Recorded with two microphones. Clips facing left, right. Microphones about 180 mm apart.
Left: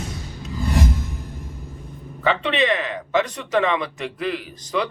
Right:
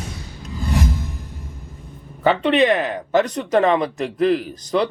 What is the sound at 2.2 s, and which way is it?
A man's voice, 45° right (ahead or behind).